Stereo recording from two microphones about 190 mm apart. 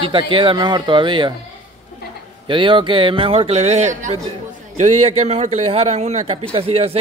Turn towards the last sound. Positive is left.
turn(degrees=-30)  # may be behind; listen again after turning